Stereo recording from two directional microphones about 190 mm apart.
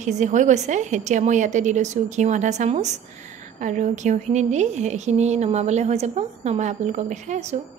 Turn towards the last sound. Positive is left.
turn(degrees=-35)  # may be behind; listen again after turning